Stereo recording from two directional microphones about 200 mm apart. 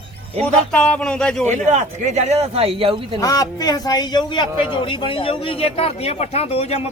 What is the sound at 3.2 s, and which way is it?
A man's voice, 15° left (ahead or behind).